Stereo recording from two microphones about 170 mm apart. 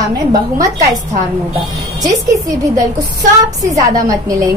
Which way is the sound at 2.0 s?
20° right (ahead or behind).